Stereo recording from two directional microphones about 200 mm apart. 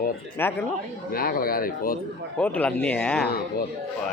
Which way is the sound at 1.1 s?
50° left (ahead or behind).